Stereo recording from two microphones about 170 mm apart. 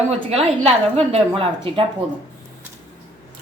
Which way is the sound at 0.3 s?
35° right (ahead or behind).